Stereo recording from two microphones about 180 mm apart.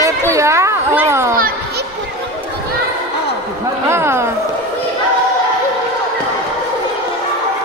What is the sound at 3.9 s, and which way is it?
Speech, 15° right (ahead or behind).